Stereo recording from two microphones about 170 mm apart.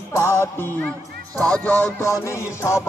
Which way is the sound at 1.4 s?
5° left (ahead or behind).